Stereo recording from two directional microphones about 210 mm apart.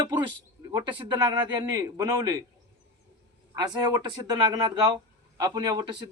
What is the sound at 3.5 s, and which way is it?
Speech, 20° right (ahead or behind).